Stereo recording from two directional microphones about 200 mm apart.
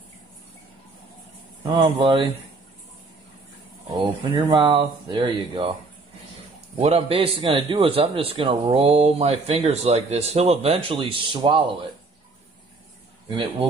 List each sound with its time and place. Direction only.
1.6 s a man's voice: 25° right (ahead or behind)
3.9 s a man's voice: 25° right (ahead or behind)
6.8 s a man's voice: 30° right (ahead or behind)
13.3 s a man's voice: 25° right (ahead or behind)